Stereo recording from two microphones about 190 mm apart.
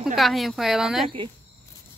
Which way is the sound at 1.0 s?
25° right (ahead or behind).